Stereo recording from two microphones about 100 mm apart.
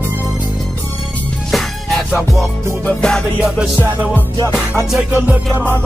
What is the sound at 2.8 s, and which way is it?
Music, 10° left (ahead or behind).